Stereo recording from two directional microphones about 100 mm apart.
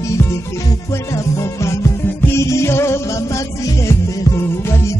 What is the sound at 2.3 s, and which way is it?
Music, 30° left (ahead or behind).